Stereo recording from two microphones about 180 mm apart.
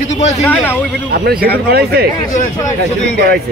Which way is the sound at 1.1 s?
55° right (ahead or behind).